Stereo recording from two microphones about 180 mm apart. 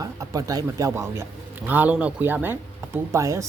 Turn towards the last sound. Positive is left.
turn(degrees=-15)  # may be behind; listen again after turning